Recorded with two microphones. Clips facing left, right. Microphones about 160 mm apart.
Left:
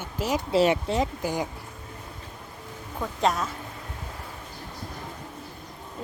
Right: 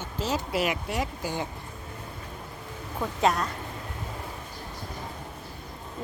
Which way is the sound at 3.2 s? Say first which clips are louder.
Even; centre (ahead or behind).